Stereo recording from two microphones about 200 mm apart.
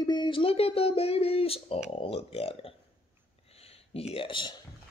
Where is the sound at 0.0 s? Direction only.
20° left (ahead or behind).